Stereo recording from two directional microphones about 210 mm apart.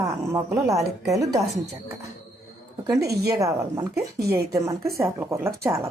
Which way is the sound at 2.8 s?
15° right (ahead or behind).